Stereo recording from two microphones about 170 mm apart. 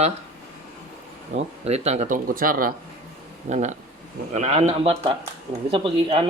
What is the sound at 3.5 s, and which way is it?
Speech, 45° right (ahead or behind).